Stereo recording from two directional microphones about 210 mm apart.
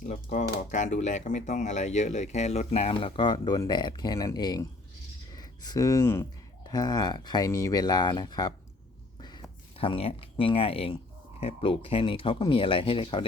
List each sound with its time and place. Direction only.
0.0 s speech: 35° left (ahead or behind)